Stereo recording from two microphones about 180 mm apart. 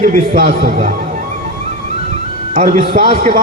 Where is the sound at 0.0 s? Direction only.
55° right (ahead or behind).